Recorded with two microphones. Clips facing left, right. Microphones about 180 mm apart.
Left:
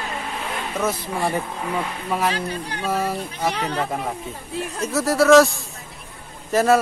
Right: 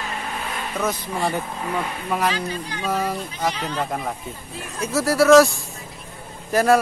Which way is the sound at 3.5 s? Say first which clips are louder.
Left 3 dB; 60° left (ahead or behind).